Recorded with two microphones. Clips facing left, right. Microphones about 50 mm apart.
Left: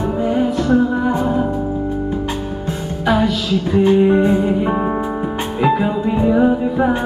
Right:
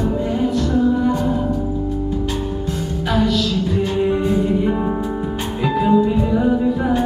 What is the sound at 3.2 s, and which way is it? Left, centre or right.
Music, centre.